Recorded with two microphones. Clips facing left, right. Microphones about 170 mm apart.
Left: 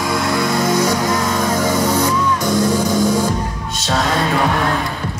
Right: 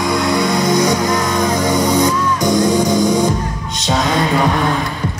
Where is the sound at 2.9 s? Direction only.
15° right (ahead or behind).